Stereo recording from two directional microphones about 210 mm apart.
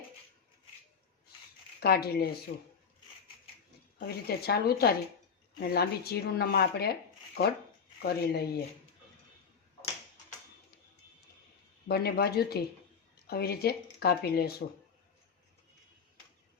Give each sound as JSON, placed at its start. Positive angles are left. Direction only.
{"t": 1.8, "sound": "speech", "side_deg": 50}
{"t": 3.9, "sound": "speech", "side_deg": 45}
{"t": 11.9, "sound": "speech", "side_deg": 50}